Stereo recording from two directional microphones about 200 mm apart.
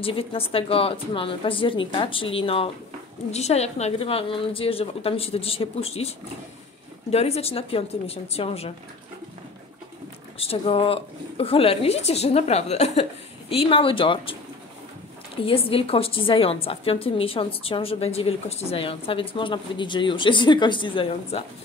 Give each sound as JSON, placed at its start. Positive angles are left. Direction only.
{"t": 0.0, "sound": "a woman's voice", "side_deg": 25}
{"t": 10.4, "sound": "a woman's voice", "side_deg": 30}
{"t": 15.4, "sound": "a woman's voice", "side_deg": 30}